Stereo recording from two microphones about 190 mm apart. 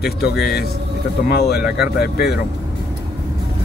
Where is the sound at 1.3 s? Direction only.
60° left (ahead or behind).